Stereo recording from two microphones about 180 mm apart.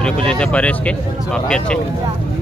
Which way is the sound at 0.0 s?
5° left (ahead or behind).